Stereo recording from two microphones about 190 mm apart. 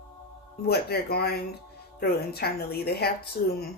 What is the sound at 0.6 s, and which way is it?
Speech, 55° left (ahead or behind).